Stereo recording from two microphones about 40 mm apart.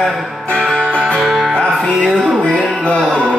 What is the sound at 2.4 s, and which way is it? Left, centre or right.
Music, left.